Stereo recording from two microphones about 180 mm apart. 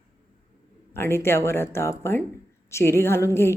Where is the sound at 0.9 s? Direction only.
15° left (ahead or behind).